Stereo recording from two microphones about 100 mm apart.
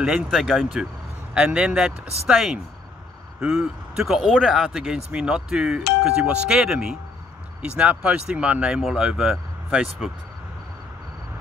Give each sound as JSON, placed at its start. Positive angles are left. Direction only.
{"t": 0.3, "sound": "speech", "side_deg": 0}
{"t": 1.3, "sound": "speech", "side_deg": -10}